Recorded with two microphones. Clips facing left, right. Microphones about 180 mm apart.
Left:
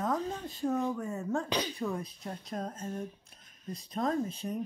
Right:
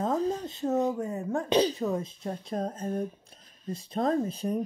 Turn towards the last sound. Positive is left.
turn(degrees=-35)  # may be behind; listen again after turning